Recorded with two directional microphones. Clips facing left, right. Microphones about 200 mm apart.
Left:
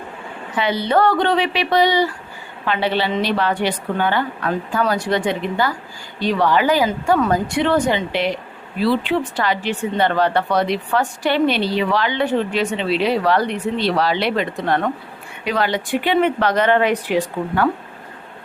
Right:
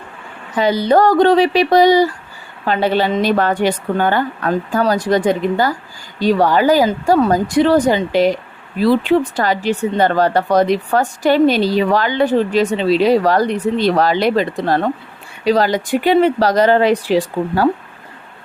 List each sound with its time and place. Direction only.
0.5 s a woman's voice: 40° right (ahead or behind)